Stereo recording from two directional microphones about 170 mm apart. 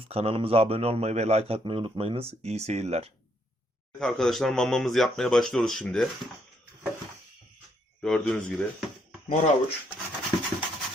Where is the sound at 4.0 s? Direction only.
Centre (ahead or behind).